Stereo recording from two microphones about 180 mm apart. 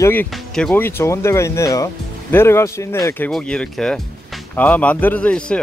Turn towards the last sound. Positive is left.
turn(degrees=5)  # may be behind; listen again after turning